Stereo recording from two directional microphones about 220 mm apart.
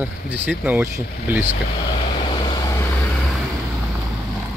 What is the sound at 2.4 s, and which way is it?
Vehicle, 20° left (ahead or behind).